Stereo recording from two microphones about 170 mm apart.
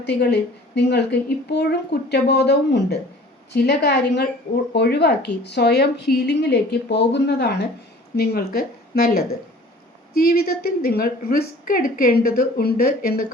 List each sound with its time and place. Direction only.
0.0 s a woman's voice: 75° left (ahead or behind)